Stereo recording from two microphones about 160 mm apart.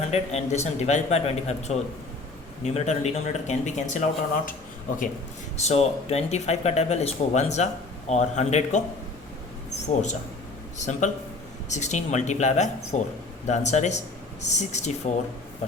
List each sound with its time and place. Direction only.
0.1 s speech: 45° left (ahead or behind)
5.5 s speech: 40° left (ahead or behind)
10.8 s speech: 50° left (ahead or behind)